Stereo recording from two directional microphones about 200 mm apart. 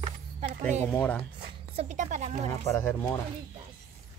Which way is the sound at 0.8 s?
5° left (ahead or behind).